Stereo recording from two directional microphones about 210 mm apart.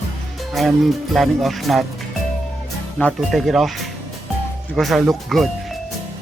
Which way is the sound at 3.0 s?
Centre (ahead or behind).